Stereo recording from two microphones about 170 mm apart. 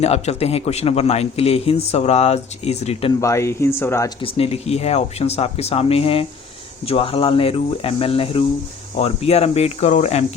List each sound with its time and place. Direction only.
0.0 s a man's voice: 40° left (ahead or behind)
3.2 s speech: 15° left (ahead or behind)
4.2 s a man's voice: 35° left (ahead or behind)